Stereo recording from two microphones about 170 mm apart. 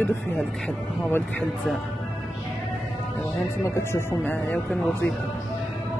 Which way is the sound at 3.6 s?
15° left (ahead or behind).